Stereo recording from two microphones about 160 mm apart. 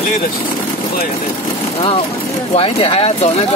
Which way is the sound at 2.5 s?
40° left (ahead or behind).